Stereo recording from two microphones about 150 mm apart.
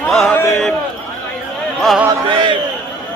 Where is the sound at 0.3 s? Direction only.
15° left (ahead or behind).